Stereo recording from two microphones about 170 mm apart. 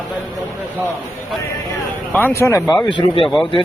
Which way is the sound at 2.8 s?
30° left (ahead or behind).